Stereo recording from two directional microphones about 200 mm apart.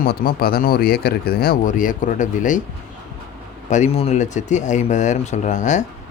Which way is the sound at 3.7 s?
35° left (ahead or behind).